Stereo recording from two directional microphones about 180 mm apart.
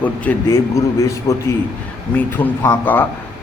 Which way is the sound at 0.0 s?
10° left (ahead or behind).